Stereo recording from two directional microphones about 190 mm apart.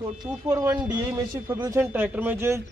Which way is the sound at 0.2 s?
20° right (ahead or behind).